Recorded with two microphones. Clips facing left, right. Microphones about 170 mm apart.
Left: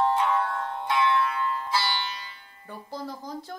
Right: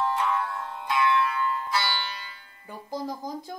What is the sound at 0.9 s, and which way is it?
Music, 25° left (ahead or behind).